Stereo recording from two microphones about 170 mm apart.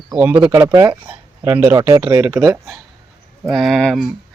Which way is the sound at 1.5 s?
10° right (ahead or behind).